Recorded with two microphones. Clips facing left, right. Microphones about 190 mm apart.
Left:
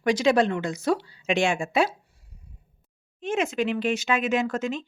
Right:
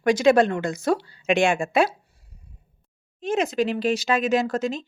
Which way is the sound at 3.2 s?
35° right (ahead or behind).